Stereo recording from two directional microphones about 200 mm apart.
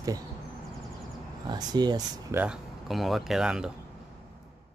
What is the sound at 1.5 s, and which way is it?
Speech, 20° right (ahead or behind).